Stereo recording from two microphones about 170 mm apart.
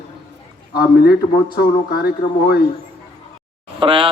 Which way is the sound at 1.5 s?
65° left (ahead or behind).